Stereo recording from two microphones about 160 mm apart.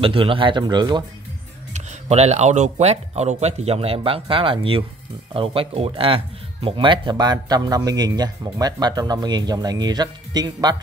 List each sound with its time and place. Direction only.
0.0 s speech: 35° right (ahead or behind)
1.7 s speech: 45° right (ahead or behind); by 10.8 s 25° right (ahead or behind)